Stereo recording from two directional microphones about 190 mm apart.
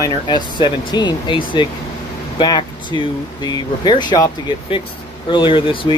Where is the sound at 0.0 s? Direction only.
25° left (ahead or behind).